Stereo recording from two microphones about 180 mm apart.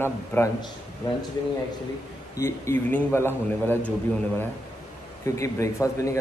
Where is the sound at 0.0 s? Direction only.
10° left (ahead or behind).